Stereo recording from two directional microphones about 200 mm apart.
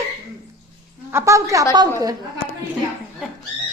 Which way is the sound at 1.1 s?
15° right (ahead or behind).